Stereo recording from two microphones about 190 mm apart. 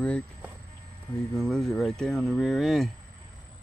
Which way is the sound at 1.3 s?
5° left (ahead or behind).